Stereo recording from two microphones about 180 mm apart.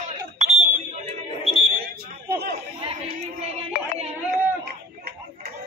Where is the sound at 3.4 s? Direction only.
35° right (ahead or behind).